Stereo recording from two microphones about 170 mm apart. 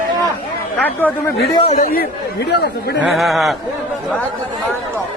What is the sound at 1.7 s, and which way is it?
Speech, 55° left (ahead or behind).